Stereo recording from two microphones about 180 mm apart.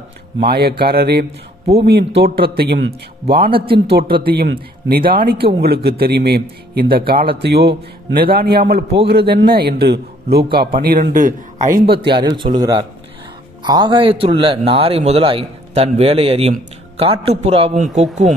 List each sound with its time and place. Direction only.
0.4 s a man's voice: 60° right (ahead or behind)
12.2 s a man's voice: 25° right (ahead or behind)